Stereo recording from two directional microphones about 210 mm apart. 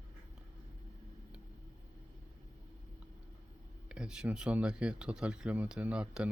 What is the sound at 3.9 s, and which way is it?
Speech, 5° right (ahead or behind).